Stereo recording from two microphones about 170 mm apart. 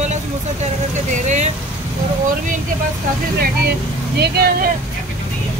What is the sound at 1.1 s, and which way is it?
Vehicle, 45° right (ahead or behind).